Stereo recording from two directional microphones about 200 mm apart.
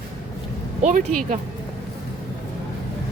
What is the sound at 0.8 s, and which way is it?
Speech, 35° right (ahead or behind).